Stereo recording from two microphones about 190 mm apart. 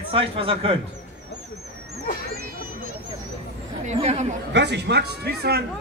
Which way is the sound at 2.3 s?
50° right (ahead or behind).